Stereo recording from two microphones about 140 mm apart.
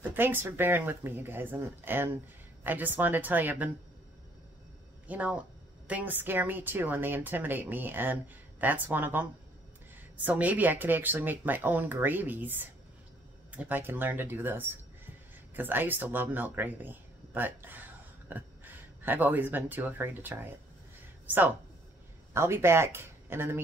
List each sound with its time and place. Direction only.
0.0 s a woman's voice: 15° right (ahead or behind)
5.0 s a woman's voice: 10° right (ahead or behind)